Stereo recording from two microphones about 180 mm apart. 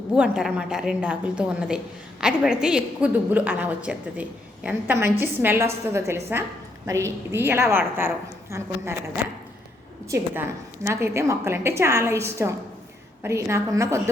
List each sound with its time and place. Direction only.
0.1 s a woman's voice: 5° right (ahead or behind)
10.8 s a woman's voice: 15° right (ahead or behind)